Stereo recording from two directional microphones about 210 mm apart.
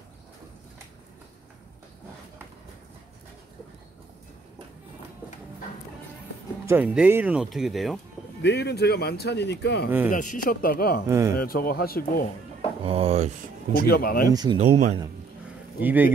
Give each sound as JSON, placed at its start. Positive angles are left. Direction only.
{"t": 6.6, "sound": "speech", "side_deg": -10}
{"t": 8.4, "sound": "speech", "side_deg": 55}
{"t": 10.0, "sound": "speech", "side_deg": 40}
{"t": 11.1, "sound": "speech", "side_deg": -15}
{"t": 11.3, "sound": "speech", "side_deg": 45}
{"t": 12.8, "sound": "speech", "side_deg": -30}
{"t": 13.8, "sound": "speech", "side_deg": 45}
{"t": 14.3, "sound": "speech", "side_deg": -20}
{"t": 15.8, "sound": "speech", "side_deg": -10}